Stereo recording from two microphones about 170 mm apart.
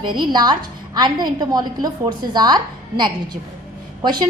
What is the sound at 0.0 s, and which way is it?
A woman's voice, 25° right (ahead or behind).